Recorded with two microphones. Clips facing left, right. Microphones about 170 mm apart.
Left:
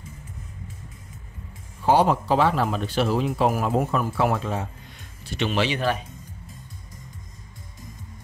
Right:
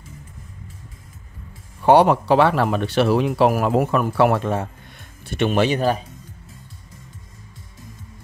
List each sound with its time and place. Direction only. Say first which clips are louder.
1.8 s speech: right 5 dB; 65° right (ahead or behind); by 6.0 s 40° right (ahead or behind)